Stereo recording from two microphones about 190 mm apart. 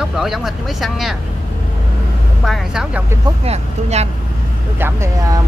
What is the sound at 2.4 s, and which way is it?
Speech, centre (ahead or behind).